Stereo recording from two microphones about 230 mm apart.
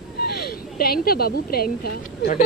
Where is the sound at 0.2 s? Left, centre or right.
Left.